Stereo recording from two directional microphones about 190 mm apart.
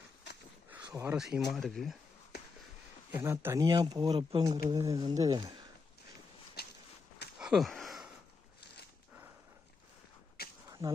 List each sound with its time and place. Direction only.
0.9 s speech: 15° right (ahead or behind)
1.1 s speech: 5° right (ahead or behind)
3.2 s speech: 15° right (ahead or behind)
6.6 s walk: 55° left (ahead or behind)
7.3 s a sound: 5° right (ahead or behind)
10.7 s a sound: 15° right (ahead or behind)